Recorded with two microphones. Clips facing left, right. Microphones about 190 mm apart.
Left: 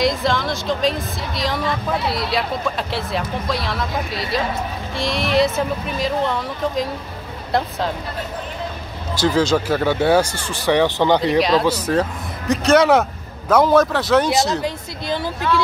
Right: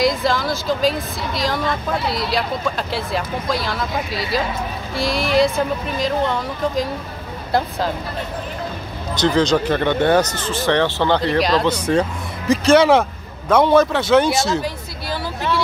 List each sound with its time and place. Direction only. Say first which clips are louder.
0.0 s speech: right 1 dB; centre (ahead or behind)
9.1 s speech: right 1 dB; 5° left (ahead or behind)
11.3 s speech: left 1 dB; centre (ahead or behind)
14.6 s a sound: left 1 dB; 20° left (ahead or behind)